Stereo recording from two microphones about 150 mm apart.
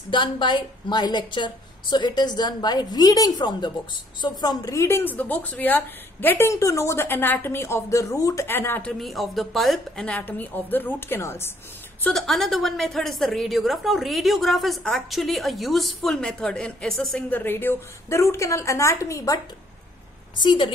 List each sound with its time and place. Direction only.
0.1 s a woman's voice: 30° left (ahead or behind); by 8.9 s 15° left (ahead or behind)
9.0 s a woman's voice: centre (ahead or behind); by 11.5 s 15° left (ahead or behind)
12.0 s a woman's voice: centre (ahead or behind)
17.3 s a woman's voice: 15° left (ahead or behind)
20.3 s a woman's voice: 30° left (ahead or behind)